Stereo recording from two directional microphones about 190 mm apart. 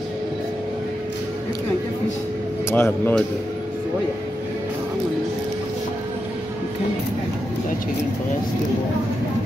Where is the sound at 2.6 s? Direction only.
10° left (ahead or behind).